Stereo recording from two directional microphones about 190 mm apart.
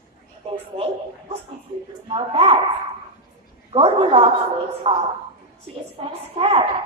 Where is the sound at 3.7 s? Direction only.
30° right (ahead or behind).